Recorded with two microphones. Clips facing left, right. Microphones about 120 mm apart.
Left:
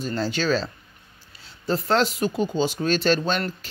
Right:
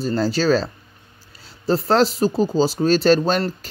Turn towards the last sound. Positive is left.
turn(degrees=-40)  # may be behind; listen again after turning